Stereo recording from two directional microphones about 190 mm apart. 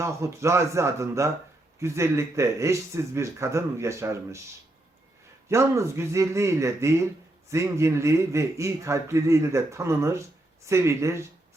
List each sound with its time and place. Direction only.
0.0 s a man's voice: 15° right (ahead or behind)
5.5 s a man's voice: 15° right (ahead or behind)